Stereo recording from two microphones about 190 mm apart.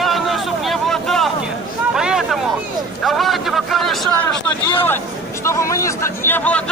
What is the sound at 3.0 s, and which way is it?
Speech, centre (ahead or behind).